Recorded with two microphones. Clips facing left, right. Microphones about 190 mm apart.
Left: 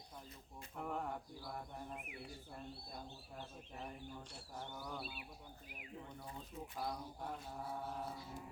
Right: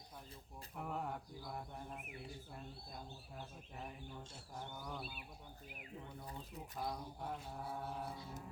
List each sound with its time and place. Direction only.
0.8 s mantra: 5° right (ahead or behind)
4.7 s mantra: centre (ahead or behind)
6.7 s mantra: 5° right (ahead or behind)